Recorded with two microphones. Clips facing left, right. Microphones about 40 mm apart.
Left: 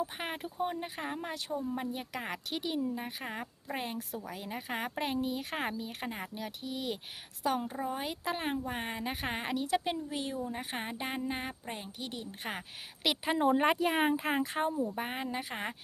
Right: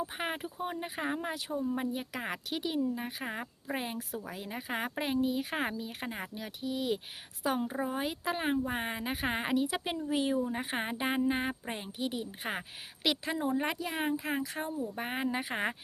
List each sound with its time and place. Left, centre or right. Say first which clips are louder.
0.0 s a woman's voice: right 1 dB; centre
13.5 s speech: left 5 dB; left
14.3 s speech: left 3 dB; left
14.9 s a woman's voice: right 2 dB; centre